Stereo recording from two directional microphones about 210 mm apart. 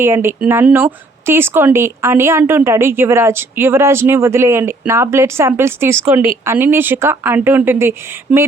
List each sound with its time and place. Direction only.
0.0 s speech: 10° right (ahead or behind)